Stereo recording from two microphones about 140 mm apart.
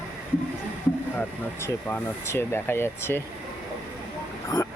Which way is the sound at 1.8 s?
15° left (ahead or behind).